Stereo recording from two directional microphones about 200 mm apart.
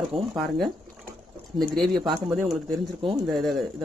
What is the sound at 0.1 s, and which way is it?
Speech, 30° right (ahead or behind).